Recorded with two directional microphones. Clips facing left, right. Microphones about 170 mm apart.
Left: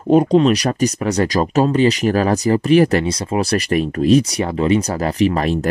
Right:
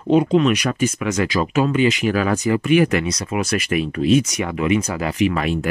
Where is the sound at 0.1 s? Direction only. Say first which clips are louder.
Left 3 dB; 40° left (ahead or behind).